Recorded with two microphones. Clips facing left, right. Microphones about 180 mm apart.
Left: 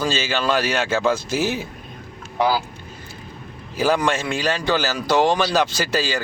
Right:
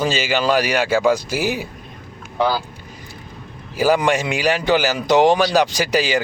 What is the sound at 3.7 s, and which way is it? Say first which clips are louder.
Speech: right 3 dB; 10° right (ahead or behind).